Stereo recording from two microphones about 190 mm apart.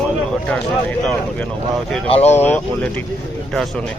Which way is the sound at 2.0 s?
35° left (ahead or behind).